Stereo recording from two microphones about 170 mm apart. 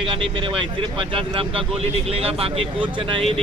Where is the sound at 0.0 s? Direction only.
30° right (ahead or behind).